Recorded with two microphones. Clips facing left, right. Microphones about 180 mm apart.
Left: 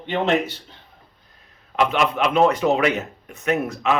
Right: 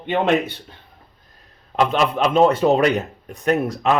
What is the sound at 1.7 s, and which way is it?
A man's voice, 35° right (ahead or behind).